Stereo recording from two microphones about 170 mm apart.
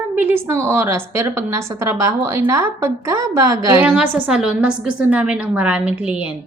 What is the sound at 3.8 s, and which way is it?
A woman's voice, 10° right (ahead or behind).